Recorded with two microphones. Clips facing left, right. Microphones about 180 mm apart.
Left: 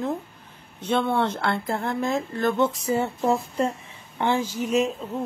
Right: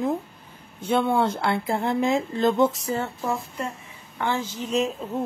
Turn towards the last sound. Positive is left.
turn(degrees=0)  # may be behind; listen again after turning